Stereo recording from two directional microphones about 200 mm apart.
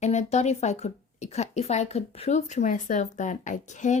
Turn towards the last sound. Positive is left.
turn(degrees=35)  # may be behind; listen again after turning